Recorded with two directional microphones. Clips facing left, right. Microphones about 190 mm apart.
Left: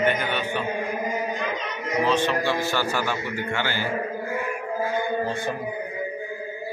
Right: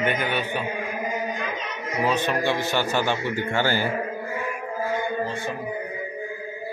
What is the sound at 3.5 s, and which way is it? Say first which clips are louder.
Speech: right 5 dB; 40° right (ahead or behind).